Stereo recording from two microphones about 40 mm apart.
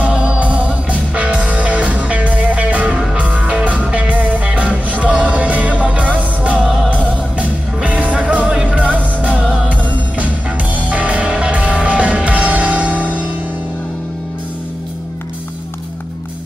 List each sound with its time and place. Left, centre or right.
0.1 s music: right
6.6 s music: centre
7.3 s music: right